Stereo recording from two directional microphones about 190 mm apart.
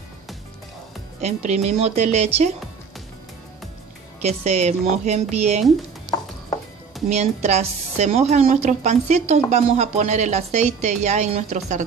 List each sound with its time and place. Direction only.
1.2 s speech: 35° right (ahead or behind)
4.2 s speech: 35° right (ahead or behind)
7.1 s speech: 35° right (ahead or behind)